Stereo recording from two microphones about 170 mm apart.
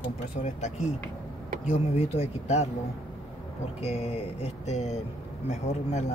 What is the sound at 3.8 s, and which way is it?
Speech, 35° left (ahead or behind).